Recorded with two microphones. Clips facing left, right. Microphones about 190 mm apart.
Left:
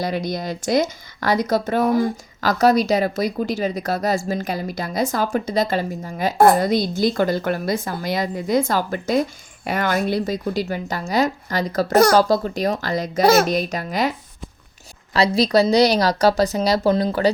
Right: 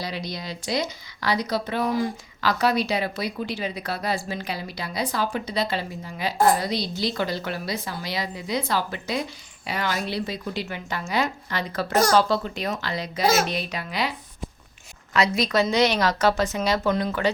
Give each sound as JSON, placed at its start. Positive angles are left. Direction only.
{"t": 0.0, "sound": "speech", "side_deg": 50}
{"t": 6.3, "sound": "speech", "side_deg": 65}
{"t": 15.1, "sound": "speech", "side_deg": 35}